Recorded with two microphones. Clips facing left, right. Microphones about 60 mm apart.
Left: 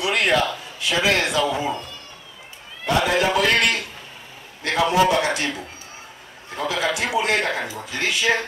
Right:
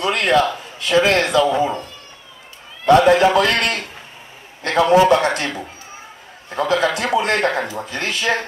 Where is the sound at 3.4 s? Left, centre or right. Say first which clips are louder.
Right 2 dB; right.